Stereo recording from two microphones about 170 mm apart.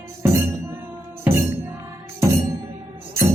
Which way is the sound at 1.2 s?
15° right (ahead or behind).